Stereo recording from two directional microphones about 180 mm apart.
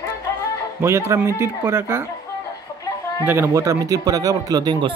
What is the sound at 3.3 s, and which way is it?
Speech, 15° right (ahead or behind).